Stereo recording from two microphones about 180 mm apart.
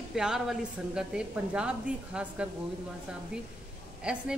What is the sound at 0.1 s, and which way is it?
A woman's voice, 5° right (ahead or behind).